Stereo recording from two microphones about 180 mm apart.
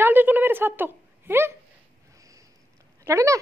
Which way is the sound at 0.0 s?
10° right (ahead or behind).